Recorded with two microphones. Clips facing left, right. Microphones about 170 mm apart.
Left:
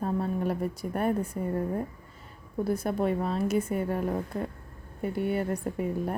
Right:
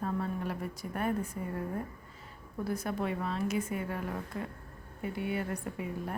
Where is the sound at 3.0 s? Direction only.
35° left (ahead or behind).